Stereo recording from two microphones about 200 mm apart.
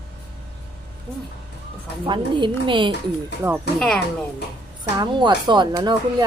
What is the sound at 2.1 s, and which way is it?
Speech, 25° right (ahead or behind).